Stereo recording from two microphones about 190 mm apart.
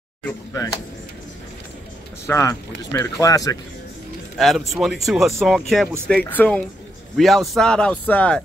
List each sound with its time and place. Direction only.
2.2 s speech: 15° left (ahead or behind)
4.4 s speech: centre (ahead or behind)